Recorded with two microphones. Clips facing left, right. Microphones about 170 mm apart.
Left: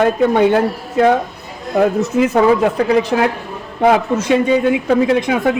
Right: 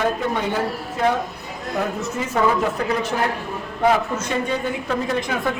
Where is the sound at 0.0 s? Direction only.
65° left (ahead or behind).